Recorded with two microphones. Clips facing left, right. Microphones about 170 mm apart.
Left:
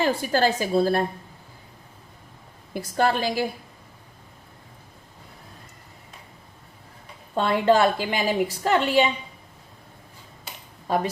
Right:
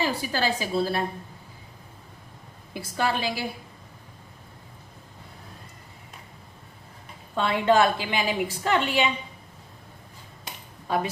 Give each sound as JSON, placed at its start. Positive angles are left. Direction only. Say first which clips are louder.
{"t": 0.0, "sound": "a woman's voice", "louder": "left 5 dB", "side_deg": 45}
{"t": 2.7, "sound": "a woman's voice", "louder": "left 4 dB", "side_deg": 45}
{"t": 7.3, "sound": "a woman's voice", "louder": "left 2 dB", "side_deg": 45}
{"t": 10.8, "sound": "a woman's voice", "louder": "left 2 dB", "side_deg": 40}